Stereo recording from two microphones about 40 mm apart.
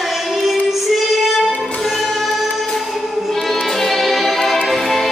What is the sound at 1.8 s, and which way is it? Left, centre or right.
Music, centre.